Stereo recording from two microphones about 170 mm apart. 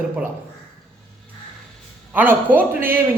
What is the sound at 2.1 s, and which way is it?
Speech, 10° right (ahead or behind).